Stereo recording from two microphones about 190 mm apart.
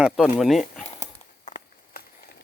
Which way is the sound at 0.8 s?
35° left (ahead or behind).